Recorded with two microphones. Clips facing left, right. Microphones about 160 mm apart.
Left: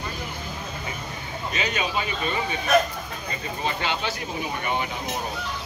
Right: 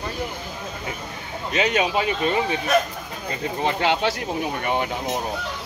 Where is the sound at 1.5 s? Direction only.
70° right (ahead or behind).